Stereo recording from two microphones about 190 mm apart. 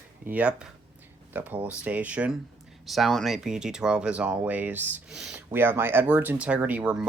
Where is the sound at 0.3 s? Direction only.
5° right (ahead or behind).